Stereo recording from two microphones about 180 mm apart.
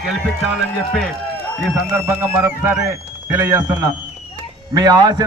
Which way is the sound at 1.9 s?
10° right (ahead or behind).